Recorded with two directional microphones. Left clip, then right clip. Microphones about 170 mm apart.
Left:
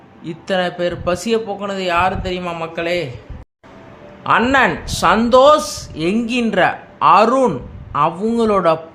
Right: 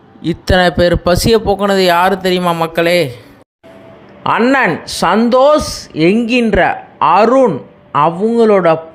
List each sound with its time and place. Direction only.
0.2 s a man's voice: 40° right (ahead or behind)
4.2 s a man's voice: 35° right (ahead or behind); by 8.8 s 20° right (ahead or behind)